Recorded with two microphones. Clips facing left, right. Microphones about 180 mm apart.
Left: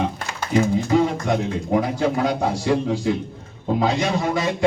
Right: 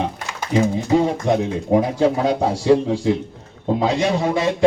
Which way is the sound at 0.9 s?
30° right (ahead or behind).